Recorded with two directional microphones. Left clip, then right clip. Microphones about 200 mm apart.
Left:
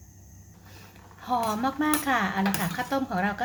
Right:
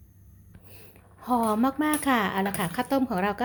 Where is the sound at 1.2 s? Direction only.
40° right (ahead or behind).